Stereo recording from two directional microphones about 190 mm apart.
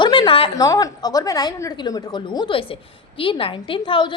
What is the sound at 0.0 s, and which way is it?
A woman's voice, 25° left (ahead or behind).